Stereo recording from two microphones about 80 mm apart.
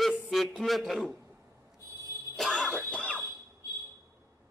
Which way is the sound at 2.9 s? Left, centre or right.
Centre.